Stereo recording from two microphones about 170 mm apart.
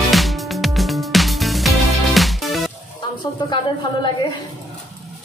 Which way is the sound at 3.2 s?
25° left (ahead or behind).